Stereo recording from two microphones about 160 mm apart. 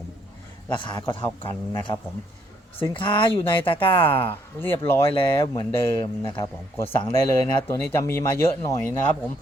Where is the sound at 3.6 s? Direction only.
30° left (ahead or behind).